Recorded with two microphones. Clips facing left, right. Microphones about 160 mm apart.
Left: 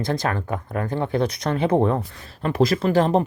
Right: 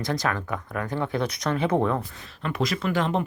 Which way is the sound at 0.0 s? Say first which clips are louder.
Left 3 dB; 30° left (ahead or behind).